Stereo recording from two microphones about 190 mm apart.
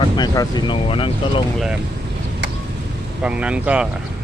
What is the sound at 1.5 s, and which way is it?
Speech, 5° right (ahead or behind).